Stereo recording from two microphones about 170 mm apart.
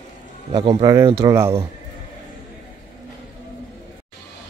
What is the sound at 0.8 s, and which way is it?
Speech, 20° right (ahead or behind).